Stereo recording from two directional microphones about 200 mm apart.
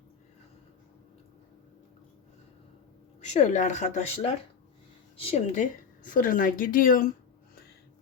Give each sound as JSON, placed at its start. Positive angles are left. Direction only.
{"t": 3.2, "sound": "speech", "side_deg": 35}
{"t": 6.1, "sound": "speech", "side_deg": 45}